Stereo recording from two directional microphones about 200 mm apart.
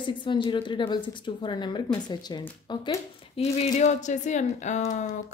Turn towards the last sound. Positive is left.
turn(degrees=35)  # may be behind; listen again after turning